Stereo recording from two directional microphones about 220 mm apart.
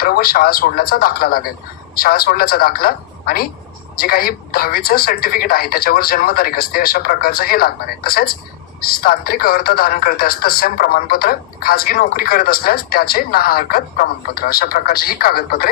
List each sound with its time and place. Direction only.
0.0 s speech: 45° left (ahead or behind)